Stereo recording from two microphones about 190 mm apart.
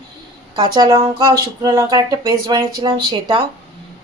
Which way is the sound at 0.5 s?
20° right (ahead or behind).